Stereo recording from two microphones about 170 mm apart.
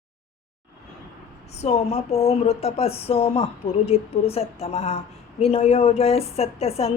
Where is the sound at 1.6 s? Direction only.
35° left (ahead or behind).